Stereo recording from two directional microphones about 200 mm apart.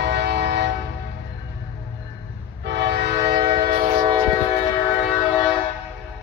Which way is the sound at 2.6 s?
60° right (ahead or behind).